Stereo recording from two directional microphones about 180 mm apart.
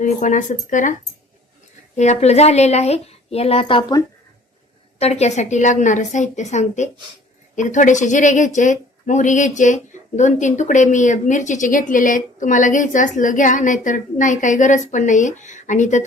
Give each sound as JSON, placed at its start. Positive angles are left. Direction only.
{"t": 0.0, "sound": "a woman's voice", "side_deg": 45}
{"t": 2.0, "sound": "a woman's voice", "side_deg": 40}
{"t": 4.9, "sound": "a woman's voice", "side_deg": 35}